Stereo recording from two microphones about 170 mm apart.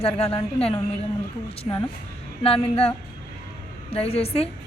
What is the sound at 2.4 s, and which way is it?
A woman's voice, 35° left (ahead or behind).